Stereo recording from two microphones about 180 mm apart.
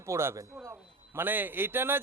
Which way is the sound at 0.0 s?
15° right (ahead or behind).